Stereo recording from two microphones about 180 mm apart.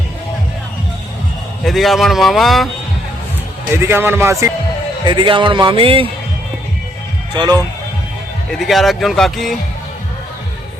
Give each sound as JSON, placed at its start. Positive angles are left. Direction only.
{"t": 1.6, "sound": "a man's voice", "side_deg": 0}
{"t": 3.7, "sound": "speech", "side_deg": -15}
{"t": 5.0, "sound": "a man's voice", "side_deg": -25}
{"t": 7.3, "sound": "a man's voice", "side_deg": -25}
{"t": 8.5, "sound": "a man's voice", "side_deg": 0}